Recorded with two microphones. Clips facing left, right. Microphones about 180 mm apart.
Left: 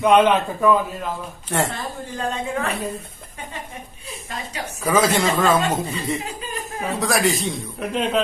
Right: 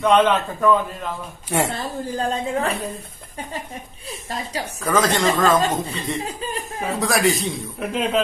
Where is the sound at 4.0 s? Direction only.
35° right (ahead or behind).